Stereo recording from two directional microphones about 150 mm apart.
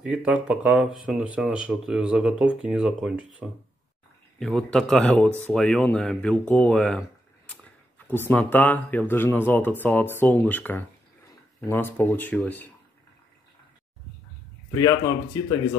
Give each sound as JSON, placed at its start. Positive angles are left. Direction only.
{"t": 0.0, "sound": "speech", "side_deg": -10}
{"t": 14.7, "sound": "speech", "side_deg": 25}